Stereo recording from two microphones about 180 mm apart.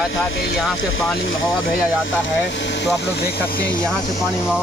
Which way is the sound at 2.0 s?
75° left (ahead or behind).